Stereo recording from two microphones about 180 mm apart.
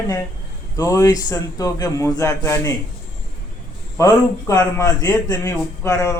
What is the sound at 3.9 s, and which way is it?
A man's voice, 15° left (ahead or behind).